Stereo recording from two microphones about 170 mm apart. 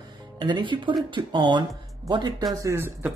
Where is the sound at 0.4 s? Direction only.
25° right (ahead or behind).